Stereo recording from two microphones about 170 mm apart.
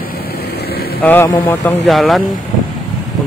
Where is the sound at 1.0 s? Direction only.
10° left (ahead or behind).